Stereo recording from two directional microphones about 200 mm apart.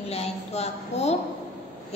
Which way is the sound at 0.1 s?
30° left (ahead or behind).